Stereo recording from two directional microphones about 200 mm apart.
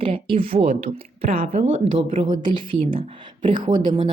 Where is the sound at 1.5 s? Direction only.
40° right (ahead or behind).